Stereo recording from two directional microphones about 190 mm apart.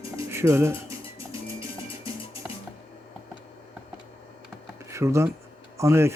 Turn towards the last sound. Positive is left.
turn(degrees=-15)  # may be behind; listen again after turning